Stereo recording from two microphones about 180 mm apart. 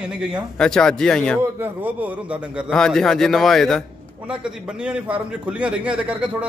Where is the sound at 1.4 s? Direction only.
10° right (ahead or behind).